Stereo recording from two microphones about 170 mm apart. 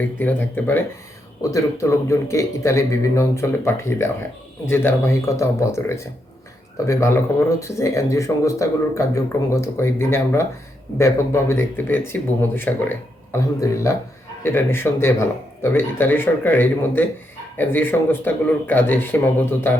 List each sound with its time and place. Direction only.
0.2 s speech: 10° left (ahead or behind)